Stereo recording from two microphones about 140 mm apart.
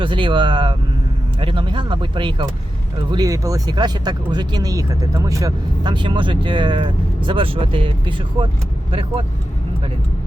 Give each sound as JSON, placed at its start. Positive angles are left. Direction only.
{"t": 0.0, "sound": "speech", "side_deg": -35}